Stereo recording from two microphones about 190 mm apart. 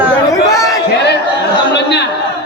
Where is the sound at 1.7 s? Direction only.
65° left (ahead or behind).